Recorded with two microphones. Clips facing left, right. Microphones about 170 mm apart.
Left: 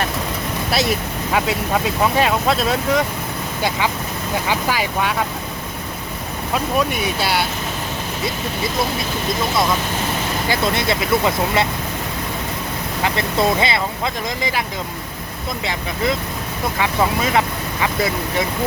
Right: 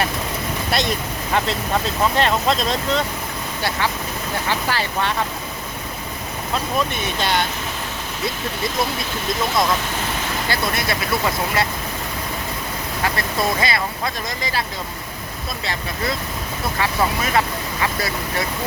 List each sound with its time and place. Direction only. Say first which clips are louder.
0.7 s speech: left 3 dB; 5° left (ahead or behind)
4.4 s speech: left 2 dB; 10° left (ahead or behind)
6.5 s speech: left 3 dB; 10° left (ahead or behind)
10.5 s speech: left 4 dB; 20° left (ahead or behind)
13.1 s speech: left 6 dB; 25° left (ahead or behind)
15.6 s speech: left 4 dB; 15° left (ahead or behind)